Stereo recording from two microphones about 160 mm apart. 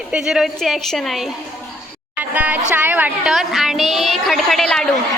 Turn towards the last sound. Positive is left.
turn(degrees=5)  # may be behind; listen again after turning